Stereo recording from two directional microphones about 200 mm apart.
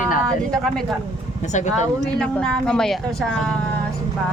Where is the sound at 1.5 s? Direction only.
35° left (ahead or behind).